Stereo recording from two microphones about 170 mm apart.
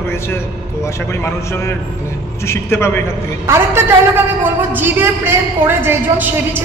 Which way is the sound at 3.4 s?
15° right (ahead or behind).